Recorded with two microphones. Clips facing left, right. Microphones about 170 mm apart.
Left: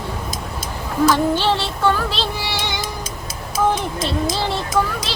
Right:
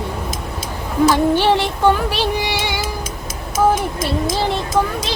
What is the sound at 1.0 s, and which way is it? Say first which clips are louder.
Music: right 3 dB; 15° right (ahead or behind).